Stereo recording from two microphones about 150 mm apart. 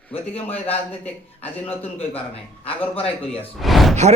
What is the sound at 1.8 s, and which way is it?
A man's voice, 40° left (ahead or behind).